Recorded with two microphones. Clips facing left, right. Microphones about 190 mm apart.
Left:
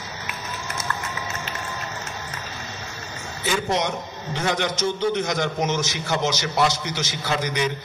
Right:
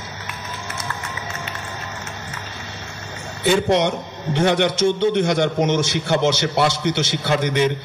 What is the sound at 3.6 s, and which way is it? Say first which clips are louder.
A man's voice: right 6 dB; 60° right (ahead or behind).